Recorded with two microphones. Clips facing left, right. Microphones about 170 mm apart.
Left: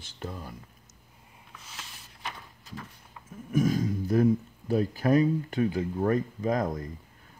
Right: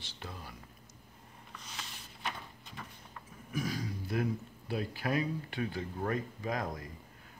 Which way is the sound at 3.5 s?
45° left (ahead or behind).